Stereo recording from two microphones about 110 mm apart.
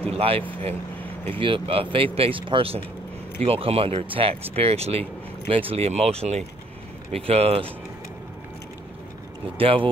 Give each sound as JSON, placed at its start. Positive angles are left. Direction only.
{"t": 0.1, "sound": "speech", "side_deg": -60}
{"t": 7.1, "sound": "speech", "side_deg": -65}
{"t": 9.6, "sound": "speech", "side_deg": -55}